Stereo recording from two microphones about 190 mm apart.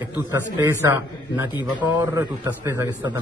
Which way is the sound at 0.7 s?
15° right (ahead or behind).